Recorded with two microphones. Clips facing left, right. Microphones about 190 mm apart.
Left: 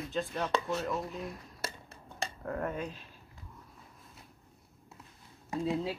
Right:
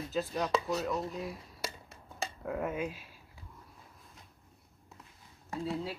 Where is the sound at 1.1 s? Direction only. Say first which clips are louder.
Right 1 dB; centre (ahead or behind).